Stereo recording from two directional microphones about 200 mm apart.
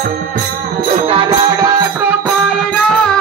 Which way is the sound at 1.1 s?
30° right (ahead or behind).